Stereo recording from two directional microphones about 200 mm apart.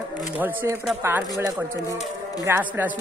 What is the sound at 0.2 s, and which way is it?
Speech, 10° right (ahead or behind).